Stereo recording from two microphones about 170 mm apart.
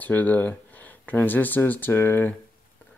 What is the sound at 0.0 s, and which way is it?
Speech, 10° left (ahead or behind).